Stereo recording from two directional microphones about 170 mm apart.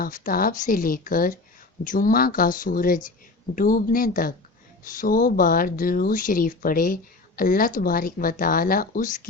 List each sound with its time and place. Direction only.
0.0 s speech: 55° left (ahead or behind)